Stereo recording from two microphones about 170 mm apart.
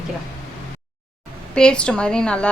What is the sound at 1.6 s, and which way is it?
Speech, 5° left (ahead or behind).